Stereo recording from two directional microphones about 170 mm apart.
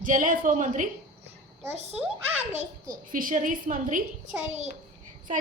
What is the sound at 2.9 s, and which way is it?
A woman's voice, 55° right (ahead or behind).